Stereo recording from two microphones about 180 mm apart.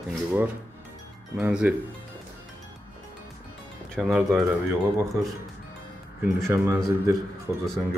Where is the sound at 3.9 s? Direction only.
5° right (ahead or behind).